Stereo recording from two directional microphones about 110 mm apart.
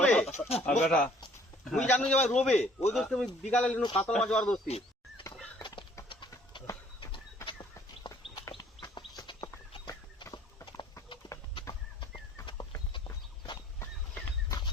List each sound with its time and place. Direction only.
0.0 s bird: 10° left (ahead or behind)
0.3 s speech: 80° left
0.6 s a man's voice: 10° left (ahead or behind)
6.1 s a sound: 45° left (ahead or behind)
7.4 s bird: 45° left (ahead or behind)
8.5 s chicken: 45° left (ahead or behind)
9.7 s walk: 45° left (ahead or behind)
11.2 s chicken: 55° left (ahead or behind)
12.5 s clip-clop: 45° left (ahead or behind)